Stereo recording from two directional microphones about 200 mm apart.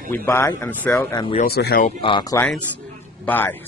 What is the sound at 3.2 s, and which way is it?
Speech, 10° left (ahead or behind).